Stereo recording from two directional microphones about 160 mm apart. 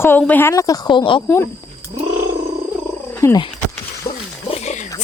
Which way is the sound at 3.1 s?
20° left (ahead or behind).